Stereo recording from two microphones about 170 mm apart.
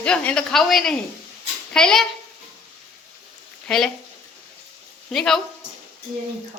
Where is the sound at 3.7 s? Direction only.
Centre (ahead or behind).